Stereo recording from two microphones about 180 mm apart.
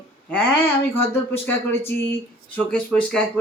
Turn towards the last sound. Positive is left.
turn(degrees=5)  # may be behind; listen again after turning